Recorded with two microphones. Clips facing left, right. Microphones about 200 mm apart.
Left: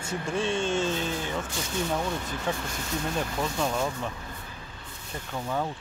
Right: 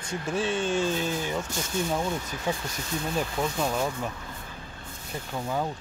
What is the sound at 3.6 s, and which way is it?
Speech, 5° right (ahead or behind).